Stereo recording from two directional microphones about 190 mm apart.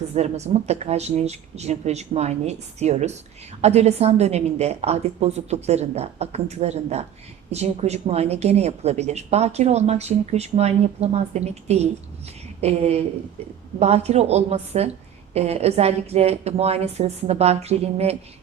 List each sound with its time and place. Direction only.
0.1 s a woman's voice: 35° right (ahead or behind)